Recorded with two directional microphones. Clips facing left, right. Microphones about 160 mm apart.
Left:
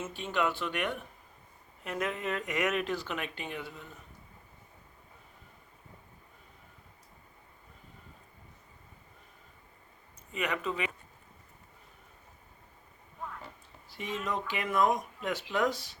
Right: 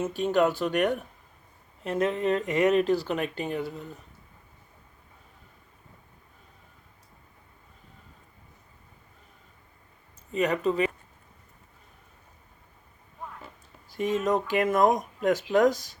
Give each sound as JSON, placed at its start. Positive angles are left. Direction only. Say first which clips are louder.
{"t": 0.0, "sound": "speech", "louder": "right 8 dB", "side_deg": -40}
{"t": 1.8, "sound": "speech", "louder": "right 8 dB", "side_deg": -30}
{"t": 10.3, "sound": "speech", "louder": "right 9 dB", "side_deg": -35}
{"t": 13.9, "sound": "speech", "louder": "right 10 dB", "side_deg": -45}